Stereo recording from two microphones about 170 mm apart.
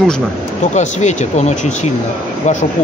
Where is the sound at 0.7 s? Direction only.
45° left (ahead or behind).